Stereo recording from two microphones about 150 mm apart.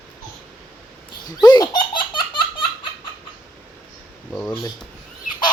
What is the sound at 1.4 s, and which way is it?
Laughter, 30° left (ahead or behind).